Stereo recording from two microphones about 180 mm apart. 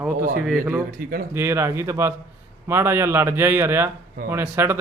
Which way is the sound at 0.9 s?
50° right (ahead or behind).